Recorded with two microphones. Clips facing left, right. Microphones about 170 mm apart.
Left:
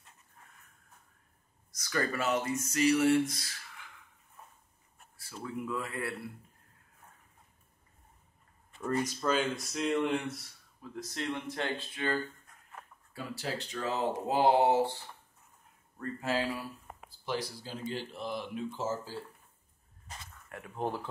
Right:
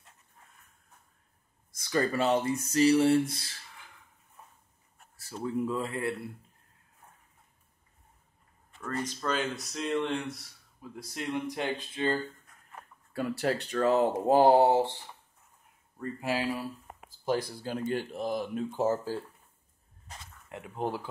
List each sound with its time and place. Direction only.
1.8 s speech: 25° right (ahead or behind)
5.1 s speech: 35° right (ahead or behind)
8.8 s speech: 10° left (ahead or behind)
10.8 s speech: 10° right (ahead or behind)
13.1 s speech: 60° right (ahead or behind); by 14.8 s 40° right (ahead or behind)
16.0 s speech: 10° right (ahead or behind)
17.2 s speech: 50° right (ahead or behind)
18.8 s speech: 60° right (ahead or behind)
20.4 s speech: 20° right (ahead or behind)